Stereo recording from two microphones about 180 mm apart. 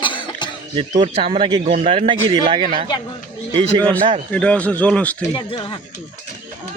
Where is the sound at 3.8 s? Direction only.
30° right (ahead or behind).